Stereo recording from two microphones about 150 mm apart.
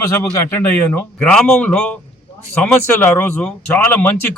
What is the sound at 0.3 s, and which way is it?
Speech, 15° left (ahead or behind).